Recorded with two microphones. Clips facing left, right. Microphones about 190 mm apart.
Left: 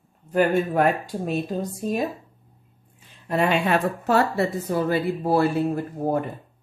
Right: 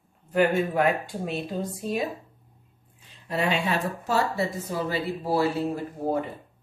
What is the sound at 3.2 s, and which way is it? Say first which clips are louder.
Speech: left 4 dB; 55° left (ahead or behind).